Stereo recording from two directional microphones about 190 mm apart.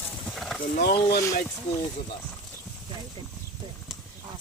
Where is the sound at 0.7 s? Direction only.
60° left (ahead or behind).